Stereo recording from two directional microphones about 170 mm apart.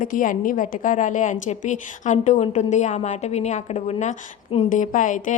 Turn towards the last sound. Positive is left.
turn(degrees=50)  # may be behind; listen again after turning